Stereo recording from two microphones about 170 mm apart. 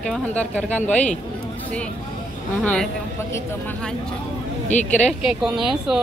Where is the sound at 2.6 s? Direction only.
5° left (ahead or behind).